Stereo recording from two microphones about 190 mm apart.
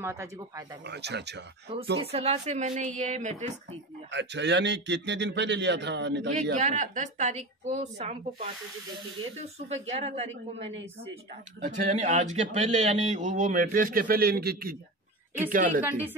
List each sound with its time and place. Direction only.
0.0 s speech: 15° right (ahead or behind)
0.8 s a man's voice: 60° right (ahead or behind)
1.7 s a man's voice: 30° right (ahead or behind)
4.1 s a man's voice: 65° right (ahead or behind)
6.5 s a man's voice: 40° right (ahead or behind)
9.7 s a man's voice: 35° right (ahead or behind)